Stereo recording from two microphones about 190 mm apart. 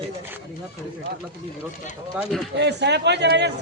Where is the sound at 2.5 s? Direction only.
65° right (ahead or behind).